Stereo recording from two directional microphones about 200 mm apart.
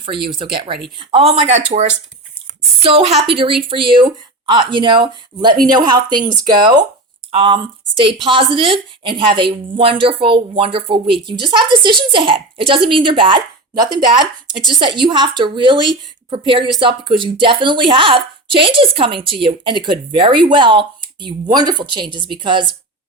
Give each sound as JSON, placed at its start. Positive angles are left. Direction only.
{"t": 0.0, "sound": "a woman's voice", "side_deg": -25}